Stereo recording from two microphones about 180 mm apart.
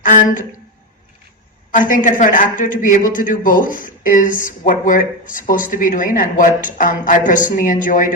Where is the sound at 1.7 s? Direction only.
50° left (ahead or behind).